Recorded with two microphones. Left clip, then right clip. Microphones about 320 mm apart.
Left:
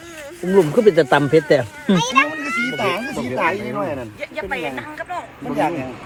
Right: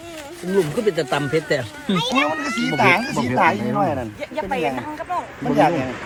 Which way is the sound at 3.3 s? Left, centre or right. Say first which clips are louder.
Right 3 dB; right.